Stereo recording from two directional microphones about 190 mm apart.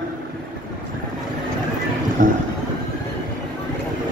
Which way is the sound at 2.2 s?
45° right (ahead or behind).